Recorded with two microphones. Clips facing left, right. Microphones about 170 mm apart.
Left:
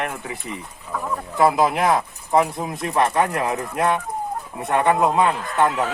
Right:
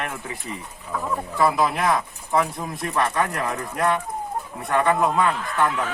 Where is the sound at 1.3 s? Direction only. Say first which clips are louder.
Left 4 dB; 20° left (ahead or behind).